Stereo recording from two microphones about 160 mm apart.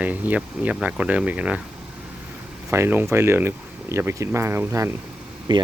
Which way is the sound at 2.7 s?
15° right (ahead or behind).